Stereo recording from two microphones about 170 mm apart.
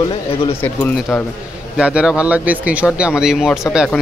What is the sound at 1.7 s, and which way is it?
A man's voice, 5° right (ahead or behind).